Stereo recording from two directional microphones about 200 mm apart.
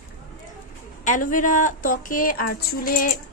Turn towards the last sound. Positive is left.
turn(degrees=45)  # may be behind; listen again after turning